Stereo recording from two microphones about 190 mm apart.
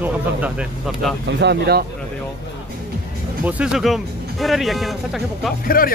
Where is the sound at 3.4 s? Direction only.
5° right (ahead or behind).